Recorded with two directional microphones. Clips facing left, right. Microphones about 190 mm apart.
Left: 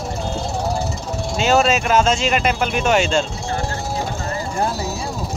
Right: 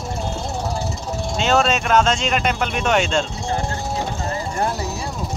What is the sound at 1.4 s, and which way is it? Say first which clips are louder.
Speech: left 2 dB; 5° left (ahead or behind).